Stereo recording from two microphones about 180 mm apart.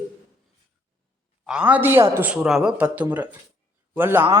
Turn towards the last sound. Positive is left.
turn(degrees=-10)  # may be behind; listen again after turning